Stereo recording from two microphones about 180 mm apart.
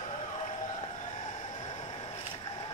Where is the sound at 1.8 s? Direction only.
30° left (ahead or behind).